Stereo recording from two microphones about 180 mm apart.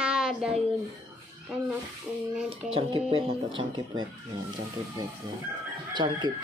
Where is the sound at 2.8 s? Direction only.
30° right (ahead or behind).